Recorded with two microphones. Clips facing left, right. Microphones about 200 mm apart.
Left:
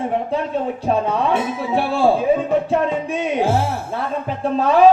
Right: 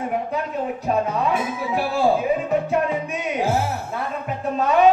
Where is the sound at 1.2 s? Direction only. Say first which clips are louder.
Left 3 dB; 30° left (ahead or behind).